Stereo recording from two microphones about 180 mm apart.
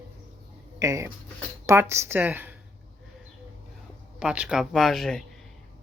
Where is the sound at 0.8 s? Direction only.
15° right (ahead or behind).